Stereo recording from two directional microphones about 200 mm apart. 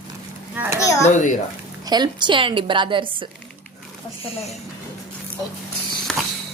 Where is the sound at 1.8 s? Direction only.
20° right (ahead or behind).